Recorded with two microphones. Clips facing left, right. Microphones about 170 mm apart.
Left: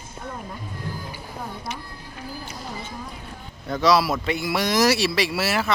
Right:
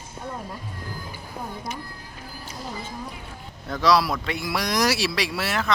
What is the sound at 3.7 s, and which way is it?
Speech, centre (ahead or behind).